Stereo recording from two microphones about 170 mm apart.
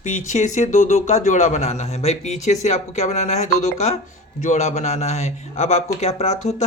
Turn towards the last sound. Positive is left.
turn(degrees=40)  # may be behind; listen again after turning